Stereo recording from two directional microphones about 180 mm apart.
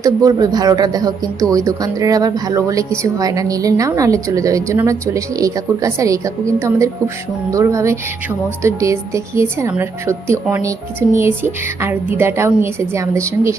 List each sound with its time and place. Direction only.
0.0 s a woman's voice: 20° right (ahead or behind)